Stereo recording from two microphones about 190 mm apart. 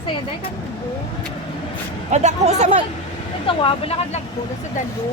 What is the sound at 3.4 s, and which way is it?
Speech, 30° left (ahead or behind).